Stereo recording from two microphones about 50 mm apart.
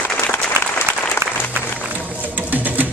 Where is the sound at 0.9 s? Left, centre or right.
Right.